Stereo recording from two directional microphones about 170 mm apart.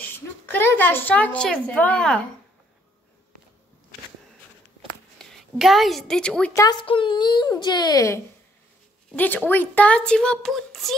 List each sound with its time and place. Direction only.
0.0 s a woman's voice: 10° left (ahead or behind)
5.2 s a woman's voice: centre (ahead or behind)
6.5 s speech: 20° left (ahead or behind)
9.1 s a woman's voice: 10° left (ahead or behind)